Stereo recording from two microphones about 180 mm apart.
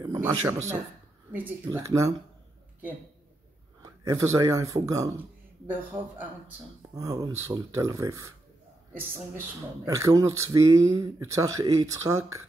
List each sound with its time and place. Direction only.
0.0 s speech: 15° right (ahead or behind)
4.0 s speech: 20° right (ahead or behind)
7.0 s speech: 20° right (ahead or behind)